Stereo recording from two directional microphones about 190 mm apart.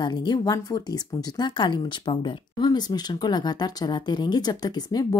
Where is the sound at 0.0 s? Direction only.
25° left (ahead or behind).